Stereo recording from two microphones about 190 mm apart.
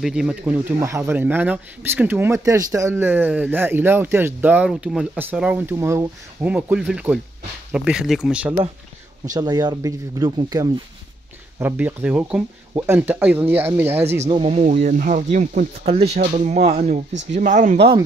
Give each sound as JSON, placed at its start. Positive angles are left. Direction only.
{"t": 0.0, "sound": "speech", "side_deg": -5}
{"t": 9.3, "sound": "speech", "side_deg": -20}
{"t": 11.6, "sound": "speech", "side_deg": -10}
{"t": 14.3, "sound": "speech", "side_deg": -30}